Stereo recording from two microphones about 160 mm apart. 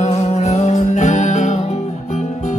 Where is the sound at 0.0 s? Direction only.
45° left (ahead or behind).